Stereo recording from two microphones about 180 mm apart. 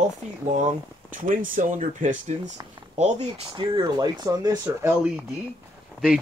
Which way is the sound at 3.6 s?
25° right (ahead or behind).